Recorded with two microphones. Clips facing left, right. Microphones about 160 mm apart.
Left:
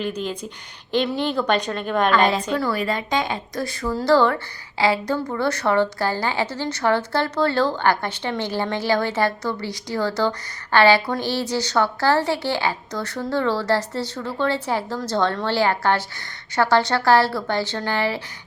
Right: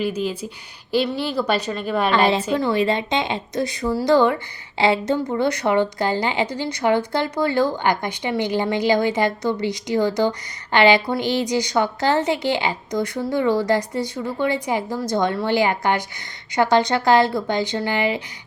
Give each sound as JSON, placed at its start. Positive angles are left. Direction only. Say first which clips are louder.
{"t": 0.0, "sound": "a woman's voice", "louder": "right 3 dB", "side_deg": -5}
{"t": 2.6, "sound": "a woman's voice", "louder": "right 4 dB", "side_deg": -25}